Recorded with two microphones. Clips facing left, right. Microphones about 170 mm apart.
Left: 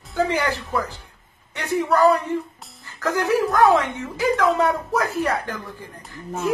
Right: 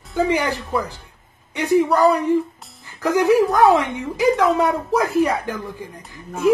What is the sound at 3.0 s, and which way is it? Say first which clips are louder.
Speech: right 5 dB; 15° right (ahead or behind).